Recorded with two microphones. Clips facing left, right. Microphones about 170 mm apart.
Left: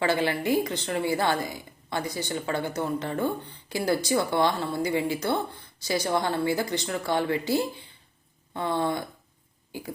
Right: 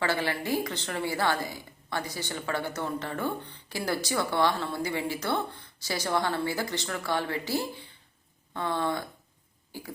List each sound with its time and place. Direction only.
0.0 s a woman's voice: 20° left (ahead or behind)